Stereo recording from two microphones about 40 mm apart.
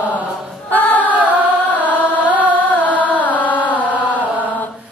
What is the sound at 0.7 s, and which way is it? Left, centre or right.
Female singing, left.